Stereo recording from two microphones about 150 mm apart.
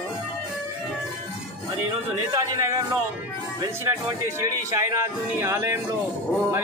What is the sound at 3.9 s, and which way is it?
Speech, 20° right (ahead or behind).